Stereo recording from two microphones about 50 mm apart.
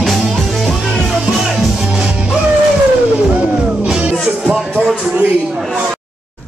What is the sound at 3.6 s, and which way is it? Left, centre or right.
Music, right.